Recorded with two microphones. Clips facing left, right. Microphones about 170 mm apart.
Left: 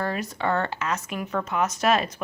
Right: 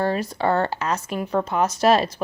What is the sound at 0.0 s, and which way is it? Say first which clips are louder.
A woman's voice: right 5 dB; 30° right (ahead or behind).